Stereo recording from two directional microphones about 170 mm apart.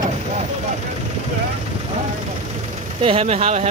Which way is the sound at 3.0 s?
35° right (ahead or behind).